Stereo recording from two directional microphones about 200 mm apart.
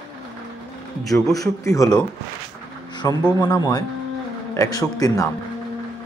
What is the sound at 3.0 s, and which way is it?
Speech, 15° left (ahead or behind).